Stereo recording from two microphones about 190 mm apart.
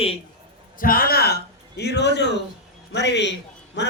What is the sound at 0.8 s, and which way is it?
A man's voice, 50° left (ahead or behind).